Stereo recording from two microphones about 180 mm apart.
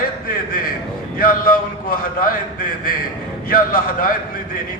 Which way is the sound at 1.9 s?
55° left (ahead or behind).